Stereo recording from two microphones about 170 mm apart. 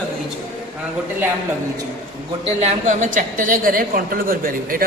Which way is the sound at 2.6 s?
50° right (ahead or behind).